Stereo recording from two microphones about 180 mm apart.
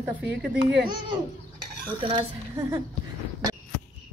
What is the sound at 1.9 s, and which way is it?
Speech, 25° right (ahead or behind).